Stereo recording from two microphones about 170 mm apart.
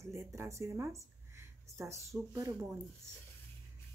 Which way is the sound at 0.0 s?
15° right (ahead or behind).